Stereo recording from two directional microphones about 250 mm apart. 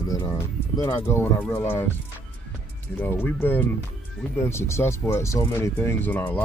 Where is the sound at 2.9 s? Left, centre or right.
Centre.